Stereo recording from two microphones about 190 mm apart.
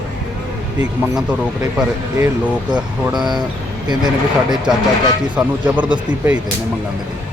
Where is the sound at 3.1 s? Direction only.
20° right (ahead or behind).